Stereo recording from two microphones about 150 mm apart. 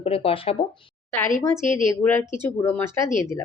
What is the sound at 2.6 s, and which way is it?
Speech, 15° left (ahead or behind).